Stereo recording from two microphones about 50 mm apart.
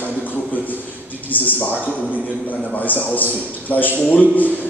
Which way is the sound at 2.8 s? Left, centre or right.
Left.